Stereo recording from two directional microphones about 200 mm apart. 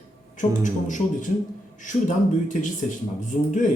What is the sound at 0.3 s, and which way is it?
A man's voice, 40° left (ahead or behind).